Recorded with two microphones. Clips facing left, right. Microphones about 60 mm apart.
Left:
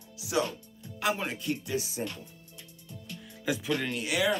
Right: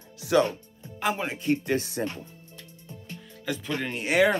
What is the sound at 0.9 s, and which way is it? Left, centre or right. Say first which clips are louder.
Speech: right 2 dB; centre.